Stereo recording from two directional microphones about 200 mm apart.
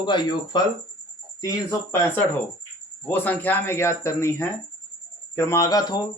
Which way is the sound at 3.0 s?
10° left (ahead or behind).